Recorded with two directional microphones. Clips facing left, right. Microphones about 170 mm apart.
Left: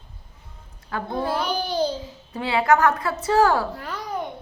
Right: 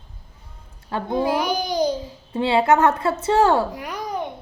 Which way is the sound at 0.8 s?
25° right (ahead or behind).